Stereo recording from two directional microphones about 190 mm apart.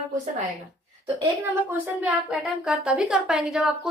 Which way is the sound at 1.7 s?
5° right (ahead or behind).